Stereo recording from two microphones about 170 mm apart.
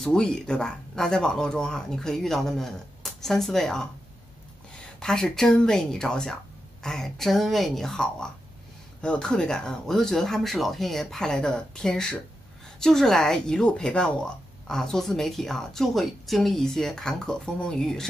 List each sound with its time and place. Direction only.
0.0 s speech: 5° left (ahead or behind)
5.0 s speech: 5° left (ahead or behind)